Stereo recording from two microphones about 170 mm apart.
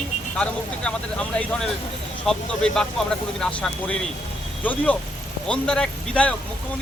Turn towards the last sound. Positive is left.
turn(degrees=5)  # may be behind; listen again after turning